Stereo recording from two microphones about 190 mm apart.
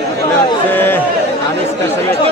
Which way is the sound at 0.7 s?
10° left (ahead or behind).